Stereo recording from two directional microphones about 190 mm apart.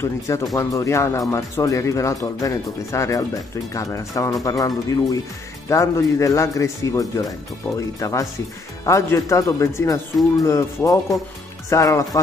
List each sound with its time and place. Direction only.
0.0 s speech: 15° left (ahead or behind)